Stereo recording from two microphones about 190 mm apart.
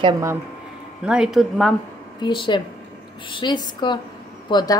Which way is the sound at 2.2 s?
25° left (ahead or behind).